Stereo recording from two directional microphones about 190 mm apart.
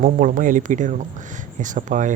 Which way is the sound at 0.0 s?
45° right (ahead or behind).